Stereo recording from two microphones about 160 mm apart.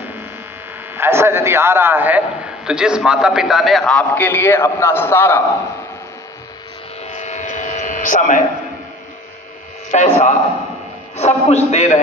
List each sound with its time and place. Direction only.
0.9 s a man's voice: 15° right (ahead or behind); by 5.4 s 15° left (ahead or behind)
7.0 s a sound: 45° left (ahead or behind)
9.8 s a man's voice: 50° left (ahead or behind)